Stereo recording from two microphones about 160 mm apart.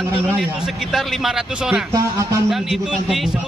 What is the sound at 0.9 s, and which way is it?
Speech, centre (ahead or behind).